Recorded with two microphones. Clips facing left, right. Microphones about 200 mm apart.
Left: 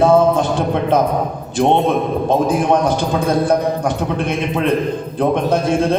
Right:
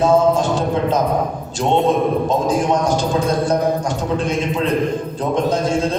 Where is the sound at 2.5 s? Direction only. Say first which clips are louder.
Left 2 dB; 55° left (ahead or behind).